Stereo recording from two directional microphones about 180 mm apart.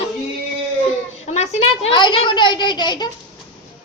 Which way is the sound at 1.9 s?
25° left (ahead or behind).